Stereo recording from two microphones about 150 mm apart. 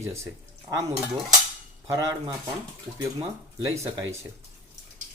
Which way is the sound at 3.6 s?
20° right (ahead or behind).